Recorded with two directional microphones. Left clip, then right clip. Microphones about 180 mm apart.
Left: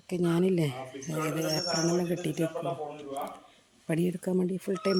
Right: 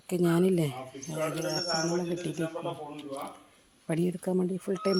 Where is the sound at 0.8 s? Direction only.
20° left (ahead or behind).